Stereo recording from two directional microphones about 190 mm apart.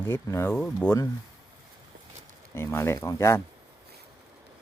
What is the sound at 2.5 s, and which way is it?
Speech, 15° left (ahead or behind).